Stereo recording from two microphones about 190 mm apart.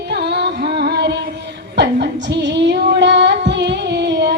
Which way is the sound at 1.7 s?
65° right (ahead or behind).